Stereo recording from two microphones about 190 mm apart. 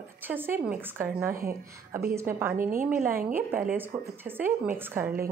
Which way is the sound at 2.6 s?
45° right (ahead or behind).